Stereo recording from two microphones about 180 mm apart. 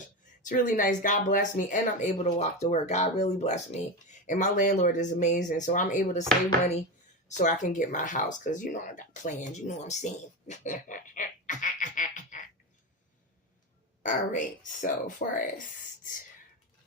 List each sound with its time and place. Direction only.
0.4 s speech: 45° left (ahead or behind)
7.3 s speech: 45° left (ahead or behind)
14.0 s speech: 45° left (ahead or behind)